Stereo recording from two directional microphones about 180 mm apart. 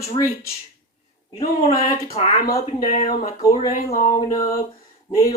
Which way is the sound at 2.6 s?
35° left (ahead or behind).